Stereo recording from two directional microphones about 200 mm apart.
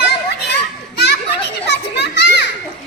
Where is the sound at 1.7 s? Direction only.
55° left (ahead or behind).